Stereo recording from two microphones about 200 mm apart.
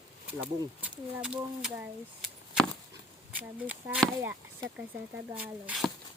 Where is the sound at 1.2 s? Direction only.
5° right (ahead or behind).